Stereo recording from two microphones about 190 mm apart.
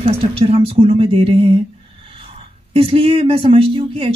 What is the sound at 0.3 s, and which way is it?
Speech, 30° right (ahead or behind).